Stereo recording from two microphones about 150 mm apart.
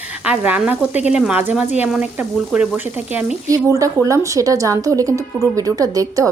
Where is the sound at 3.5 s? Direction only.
20° right (ahead or behind).